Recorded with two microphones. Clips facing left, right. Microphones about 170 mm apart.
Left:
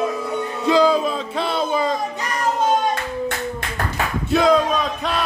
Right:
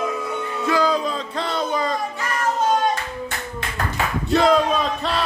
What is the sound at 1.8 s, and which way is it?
Child singing, 20° left (ahead or behind).